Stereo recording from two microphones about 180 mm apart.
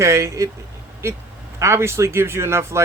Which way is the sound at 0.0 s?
15° right (ahead or behind).